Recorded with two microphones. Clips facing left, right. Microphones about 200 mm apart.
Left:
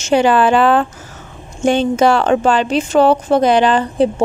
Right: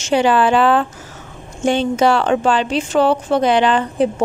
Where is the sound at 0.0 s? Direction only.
45° left (ahead or behind).